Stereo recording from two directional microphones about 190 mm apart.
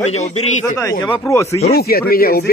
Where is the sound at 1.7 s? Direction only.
55° left (ahead or behind).